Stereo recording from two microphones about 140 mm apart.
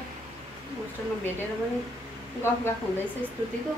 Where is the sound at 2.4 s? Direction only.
15° left (ahead or behind).